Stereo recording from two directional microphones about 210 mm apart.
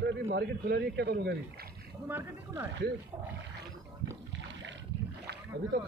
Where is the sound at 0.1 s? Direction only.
55° right (ahead or behind).